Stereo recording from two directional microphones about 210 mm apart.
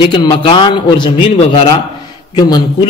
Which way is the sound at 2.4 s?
20° left (ahead or behind).